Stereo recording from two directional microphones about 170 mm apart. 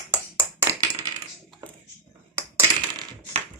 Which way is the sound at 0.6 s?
20° right (ahead or behind).